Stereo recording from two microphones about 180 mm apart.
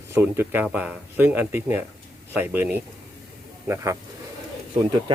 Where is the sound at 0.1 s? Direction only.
10° right (ahead or behind).